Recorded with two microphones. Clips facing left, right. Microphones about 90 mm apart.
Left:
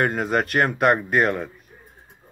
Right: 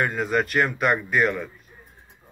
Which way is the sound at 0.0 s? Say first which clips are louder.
Left 2 dB; 50° left (ahead or behind).